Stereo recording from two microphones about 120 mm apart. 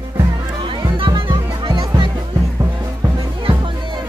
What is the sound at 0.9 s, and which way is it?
Music, 40° right (ahead or behind).